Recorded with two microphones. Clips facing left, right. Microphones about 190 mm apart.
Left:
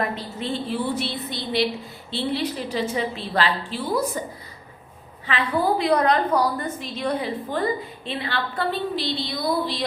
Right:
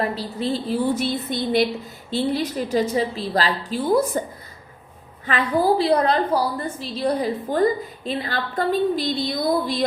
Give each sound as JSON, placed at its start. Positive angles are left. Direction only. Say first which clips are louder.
{"t": 0.0, "sound": "a woman's voice", "louder": "right 3 dB", "side_deg": -35}
{"t": 5.2, "sound": "a woman's voice", "louder": "right 3 dB", "side_deg": -40}